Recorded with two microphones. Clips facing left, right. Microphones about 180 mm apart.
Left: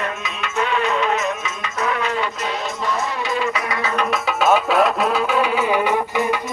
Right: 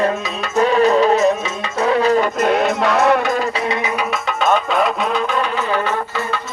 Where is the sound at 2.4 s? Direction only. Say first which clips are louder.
Right 9 dB; 60° right (ahead or behind).